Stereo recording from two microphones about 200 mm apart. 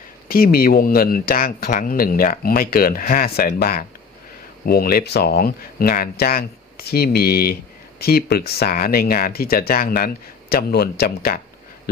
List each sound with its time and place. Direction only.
0.3 s speech: 45° left (ahead or behind)